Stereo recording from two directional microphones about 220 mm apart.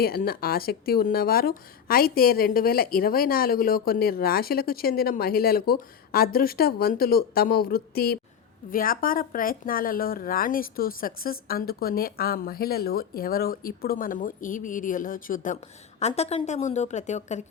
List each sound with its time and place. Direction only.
0.0 s a woman's voice: 45° left (ahead or behind)